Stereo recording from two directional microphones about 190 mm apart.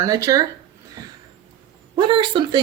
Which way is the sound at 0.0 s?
15° right (ahead or behind).